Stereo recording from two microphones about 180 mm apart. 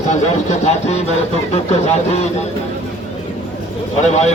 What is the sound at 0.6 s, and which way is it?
A man's voice, 40° left (ahead or behind).